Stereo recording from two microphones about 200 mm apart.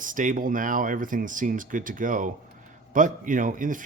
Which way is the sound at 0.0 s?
40° right (ahead or behind).